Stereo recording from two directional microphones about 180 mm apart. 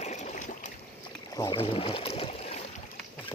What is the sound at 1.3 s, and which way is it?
Boat, 25° left (ahead or behind).